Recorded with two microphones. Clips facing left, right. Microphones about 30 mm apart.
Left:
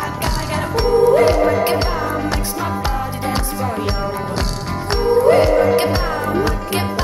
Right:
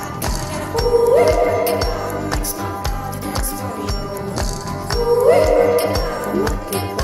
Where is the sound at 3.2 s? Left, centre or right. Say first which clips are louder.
Left 4 dB; left.